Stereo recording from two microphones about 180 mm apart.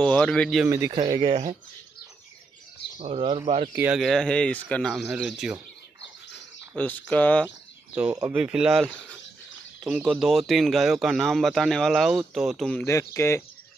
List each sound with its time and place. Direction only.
0.0 s speech: 5° left (ahead or behind)
0.7 s speech: 15° right (ahead or behind)
1.3 s speech: 40° right (ahead or behind)
3.0 s speech: 35° right (ahead or behind)
3.7 s speech: 10° right (ahead or behind)
4.0 s speech: 5° left (ahead or behind)
6.7 s speech: 10° left (ahead or behind)
7.4 s a sound: 10° right (ahead or behind)
8.4 s speech: 5° right (ahead or behind)
12.8 s speech: 15° left (ahead or behind)